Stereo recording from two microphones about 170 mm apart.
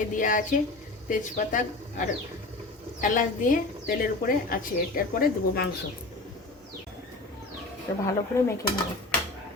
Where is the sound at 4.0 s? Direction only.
55° left (ahead or behind).